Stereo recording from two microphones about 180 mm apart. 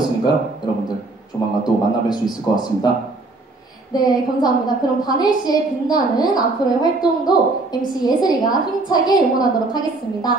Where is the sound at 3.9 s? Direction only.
20° left (ahead or behind).